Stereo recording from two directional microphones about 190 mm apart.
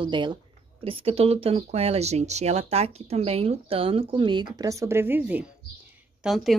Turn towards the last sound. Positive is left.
turn(degrees=0)  # may be behind; listen again after turning